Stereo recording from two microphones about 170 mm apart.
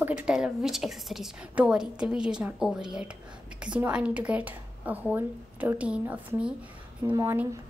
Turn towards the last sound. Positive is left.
turn(degrees=-15)  # may be behind; listen again after turning